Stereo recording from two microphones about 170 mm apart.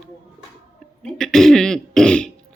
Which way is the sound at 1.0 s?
5° left (ahead or behind).